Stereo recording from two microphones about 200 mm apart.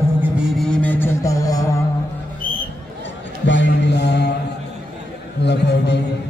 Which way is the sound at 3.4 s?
60° left (ahead or behind).